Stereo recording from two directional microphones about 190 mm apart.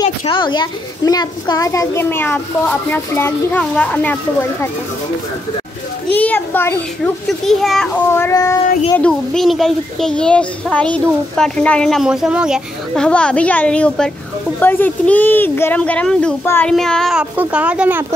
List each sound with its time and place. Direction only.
0.3 s a child's voice: 25° left (ahead or behind); by 4.6 s 10° left (ahead or behind)
6.1 s a child's voice: 10° left (ahead or behind)
8.1 s a child's voice: 15° left (ahead or behind)
8.9 s a child's voice: 5° left (ahead or behind)